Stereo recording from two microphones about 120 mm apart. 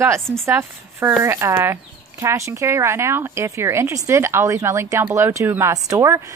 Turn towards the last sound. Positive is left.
turn(degrees=-25)  # may be behind; listen again after turning